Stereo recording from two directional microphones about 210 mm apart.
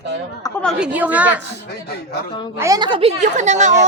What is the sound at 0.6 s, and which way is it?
Speech, 5° right (ahead or behind).